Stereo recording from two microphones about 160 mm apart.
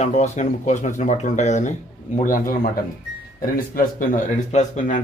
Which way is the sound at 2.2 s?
60° left (ahead or behind).